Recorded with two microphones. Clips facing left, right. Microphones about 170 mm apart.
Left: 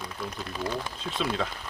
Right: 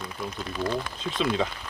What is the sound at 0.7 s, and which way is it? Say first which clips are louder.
Speech: right 3 dB; centre (ahead or behind).